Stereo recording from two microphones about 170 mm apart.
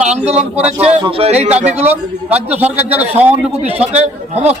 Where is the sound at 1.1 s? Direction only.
35° right (ahead or behind).